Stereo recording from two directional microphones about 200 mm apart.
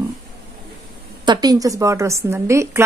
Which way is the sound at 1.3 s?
20° right (ahead or behind).